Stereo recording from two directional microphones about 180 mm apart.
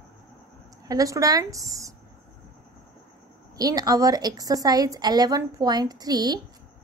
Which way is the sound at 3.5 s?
20° right (ahead or behind).